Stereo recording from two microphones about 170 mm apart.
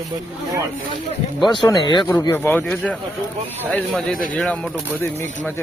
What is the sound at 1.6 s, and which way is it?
Speech, 25° left (ahead or behind).